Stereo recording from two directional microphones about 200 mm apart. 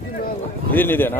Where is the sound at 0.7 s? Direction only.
10° left (ahead or behind).